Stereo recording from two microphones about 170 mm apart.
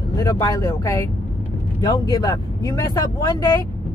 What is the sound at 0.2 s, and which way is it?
Speech, 20° left (ahead or behind).